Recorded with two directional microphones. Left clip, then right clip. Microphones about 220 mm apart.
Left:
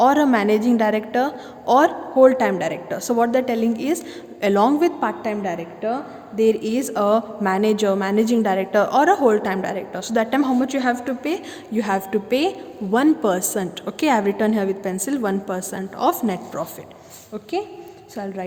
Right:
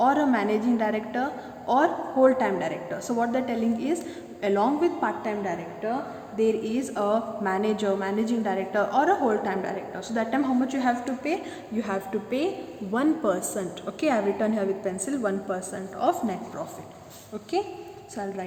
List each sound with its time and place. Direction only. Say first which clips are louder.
0.0 s a woman's voice: left 6 dB; 45° left (ahead or behind)